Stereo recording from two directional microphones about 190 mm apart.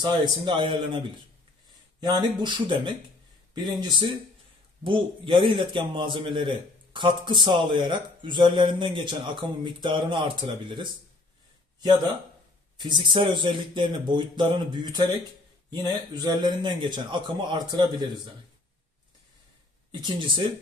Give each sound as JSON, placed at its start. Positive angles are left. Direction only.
{"t": 0.0, "sound": "a man's voice", "side_deg": -25}
{"t": 2.0, "sound": "a man's voice", "side_deg": -25}
{"t": 3.9, "sound": "a man's voice", "side_deg": -25}
{"t": 12.7, "sound": "a man's voice", "side_deg": -25}
{"t": 19.9, "sound": "a man's voice", "side_deg": -25}